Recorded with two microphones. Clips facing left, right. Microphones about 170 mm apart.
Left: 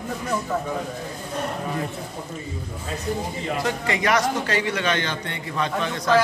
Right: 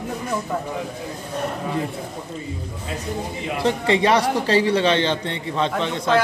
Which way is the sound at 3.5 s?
30° right (ahead or behind).